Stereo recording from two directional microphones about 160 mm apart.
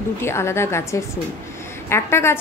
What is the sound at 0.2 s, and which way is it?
A woman's voice, 15° left (ahead or behind).